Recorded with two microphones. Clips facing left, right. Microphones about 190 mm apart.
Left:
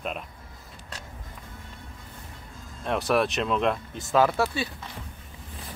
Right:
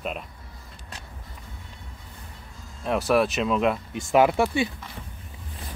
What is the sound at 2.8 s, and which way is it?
Speech, centre (ahead or behind).